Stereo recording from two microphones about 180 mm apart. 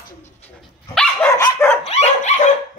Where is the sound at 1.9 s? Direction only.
40° left (ahead or behind).